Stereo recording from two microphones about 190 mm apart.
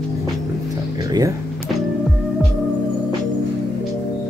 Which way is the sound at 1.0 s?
20° right (ahead or behind).